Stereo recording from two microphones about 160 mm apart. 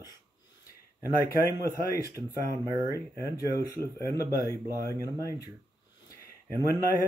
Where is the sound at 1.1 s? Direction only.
65° left (ahead or behind).